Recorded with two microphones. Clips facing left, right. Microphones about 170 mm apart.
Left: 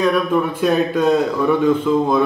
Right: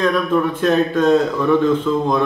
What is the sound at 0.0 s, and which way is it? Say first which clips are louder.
A man's voice: even; 10° left (ahead or behind).